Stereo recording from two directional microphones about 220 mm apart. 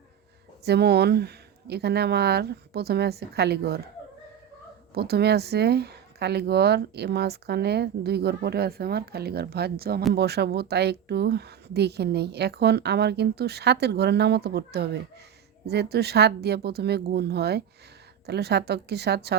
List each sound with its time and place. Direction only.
0.6 s a woman's voice: 50° right (ahead or behind)
4.9 s a woman's voice: 45° right (ahead or behind)